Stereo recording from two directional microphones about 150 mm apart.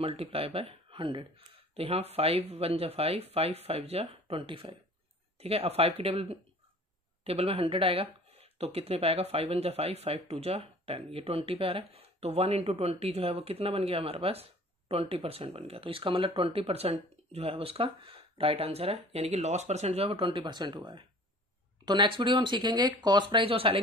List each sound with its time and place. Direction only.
0.0 s speech: 40° right (ahead or behind)